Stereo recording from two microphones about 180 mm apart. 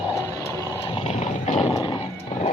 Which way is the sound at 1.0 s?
35° left (ahead or behind).